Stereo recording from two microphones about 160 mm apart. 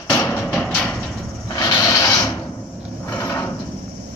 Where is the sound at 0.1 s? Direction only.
15° left (ahead or behind).